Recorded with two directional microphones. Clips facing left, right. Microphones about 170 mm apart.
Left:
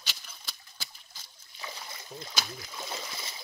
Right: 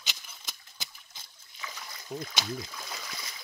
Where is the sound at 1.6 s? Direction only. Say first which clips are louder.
Left 1 dB; 30° left (ahead or behind).